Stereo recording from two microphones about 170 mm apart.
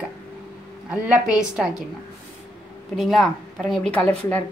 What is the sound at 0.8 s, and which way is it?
Speech, 5° right (ahead or behind).